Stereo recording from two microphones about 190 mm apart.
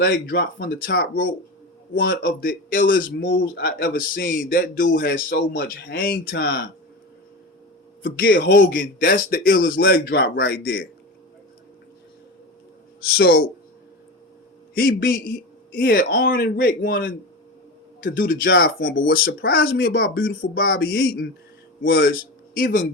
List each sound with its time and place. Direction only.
0.0 s a man's voice: 50° left (ahead or behind)
3.2 s speech: 75° left (ahead or behind)
3.6 s speech: 60° left (ahead or behind)
3.9 s a man's voice: 45° left (ahead or behind)
8.5 s a man's voice: 45° left (ahead or behind)
13.1 s speech: 55° left (ahead or behind)
15.7 s a man's voice: 55° left (ahead or behind)